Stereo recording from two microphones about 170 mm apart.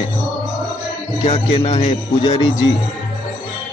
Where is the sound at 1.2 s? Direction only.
35° left (ahead or behind).